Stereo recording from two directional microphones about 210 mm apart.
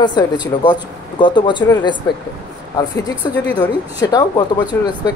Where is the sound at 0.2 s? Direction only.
15° left (ahead or behind).